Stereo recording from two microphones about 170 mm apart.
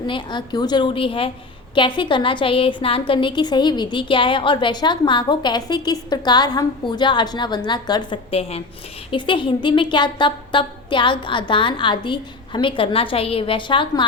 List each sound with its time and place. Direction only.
0.1 s a woman's voice: 25° left (ahead or behind)